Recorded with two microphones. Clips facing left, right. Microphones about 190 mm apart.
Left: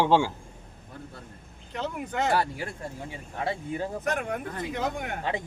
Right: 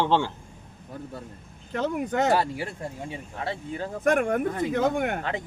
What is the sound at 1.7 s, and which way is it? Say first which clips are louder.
Speech: right 6 dB; 45° right (ahead or behind).